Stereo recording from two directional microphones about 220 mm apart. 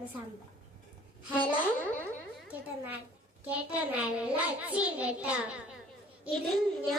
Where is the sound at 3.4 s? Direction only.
5° right (ahead or behind).